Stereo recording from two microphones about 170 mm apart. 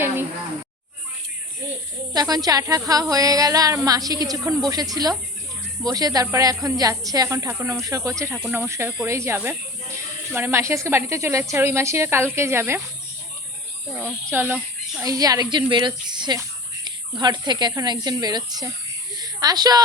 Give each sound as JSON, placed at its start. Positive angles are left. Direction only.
{"t": 2.1, "sound": "speech", "side_deg": -20}
{"t": 13.9, "sound": "speech", "side_deg": -15}
{"t": 19.1, "sound": "snake", "side_deg": -25}